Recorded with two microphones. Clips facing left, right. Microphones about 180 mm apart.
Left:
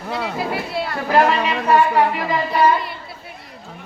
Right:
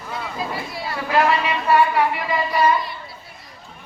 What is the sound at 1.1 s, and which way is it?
Speech, 40° left (ahead or behind).